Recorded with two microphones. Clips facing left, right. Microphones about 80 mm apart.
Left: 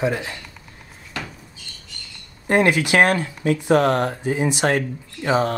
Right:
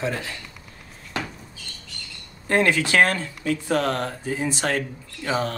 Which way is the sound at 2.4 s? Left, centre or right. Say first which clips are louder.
Left 3 dB; centre.